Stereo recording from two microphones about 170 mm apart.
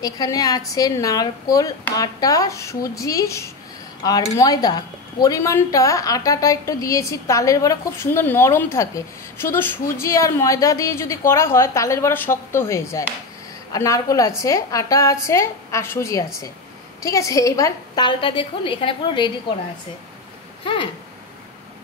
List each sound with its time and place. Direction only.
0.0 s a woman's voice: 20° left (ahead or behind)
20.6 s speech: 30° left (ahead or behind)